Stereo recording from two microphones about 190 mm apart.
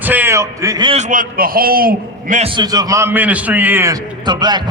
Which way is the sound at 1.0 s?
45° right (ahead or behind).